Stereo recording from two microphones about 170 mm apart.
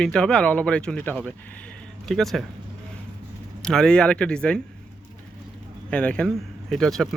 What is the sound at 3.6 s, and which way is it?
Speech, 5° left (ahead or behind).